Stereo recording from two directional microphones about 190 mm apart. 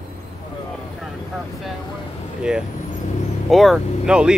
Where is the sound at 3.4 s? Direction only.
Centre (ahead or behind).